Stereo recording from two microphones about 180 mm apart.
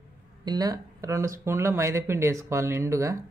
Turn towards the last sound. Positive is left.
turn(degrees=-15)  # may be behind; listen again after turning